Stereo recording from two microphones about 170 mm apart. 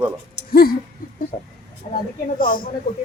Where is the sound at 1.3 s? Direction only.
40° left (ahead or behind).